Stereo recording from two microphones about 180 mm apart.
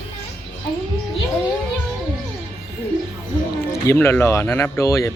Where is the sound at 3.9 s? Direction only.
10° left (ahead or behind).